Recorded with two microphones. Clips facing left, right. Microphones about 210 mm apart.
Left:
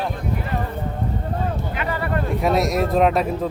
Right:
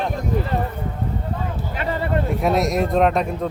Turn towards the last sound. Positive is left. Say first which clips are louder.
# even
turn(degrees=0)  # may be behind; listen again after turning